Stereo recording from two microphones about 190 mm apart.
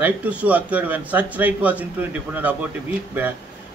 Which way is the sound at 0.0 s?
10° right (ahead or behind).